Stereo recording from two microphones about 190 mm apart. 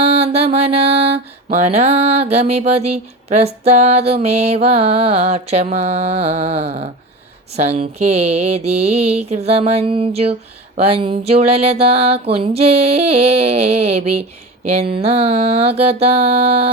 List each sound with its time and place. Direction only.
0.0 s mantra: 30° right (ahead or behind)